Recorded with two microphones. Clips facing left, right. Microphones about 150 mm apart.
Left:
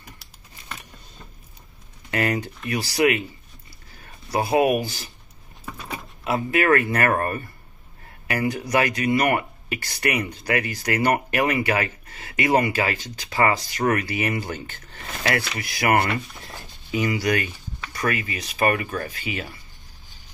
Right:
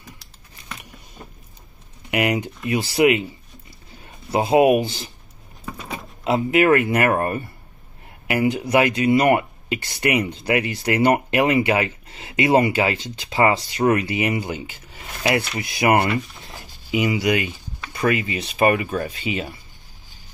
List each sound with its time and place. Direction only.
2.0 s speech: 15° right (ahead or behind)